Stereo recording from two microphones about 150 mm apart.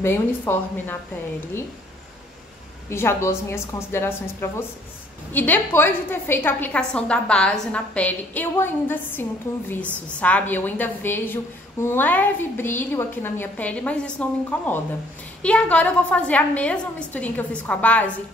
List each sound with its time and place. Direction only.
0.0 s a woman's voice: 15° left (ahead or behind)
2.9 s a woman's voice: 15° left (ahead or behind)
10.2 s a woman's voice: 10° left (ahead or behind)